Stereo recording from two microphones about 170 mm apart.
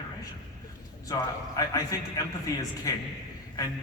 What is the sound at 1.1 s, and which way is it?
A man's voice, 20° left (ahead or behind).